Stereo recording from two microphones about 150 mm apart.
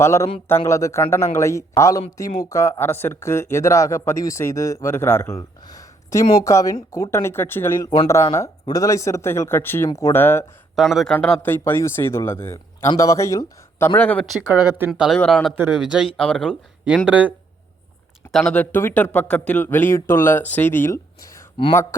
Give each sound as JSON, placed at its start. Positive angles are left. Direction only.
{"t": 0.0, "sound": "speech", "side_deg": 20}
{"t": 10.8, "sound": "speech", "side_deg": 0}
{"t": 14.8, "sound": "speech", "side_deg": 0}
{"t": 17.1, "sound": "speech", "side_deg": -10}
{"t": 18.3, "sound": "speech", "side_deg": 5}